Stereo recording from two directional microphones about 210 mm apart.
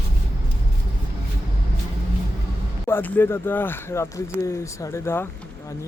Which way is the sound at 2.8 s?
10° left (ahead or behind).